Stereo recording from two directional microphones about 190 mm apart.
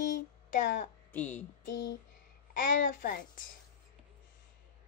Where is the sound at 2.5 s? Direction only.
45° left (ahead or behind).